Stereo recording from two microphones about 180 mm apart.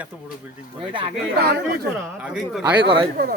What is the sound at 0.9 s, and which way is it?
Speech, 30° right (ahead or behind).